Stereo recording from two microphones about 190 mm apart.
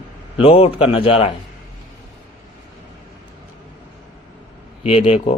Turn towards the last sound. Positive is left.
turn(degrees=35)  # may be behind; listen again after turning